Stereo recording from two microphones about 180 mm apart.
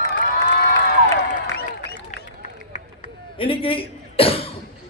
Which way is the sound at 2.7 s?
35° left (ahead or behind).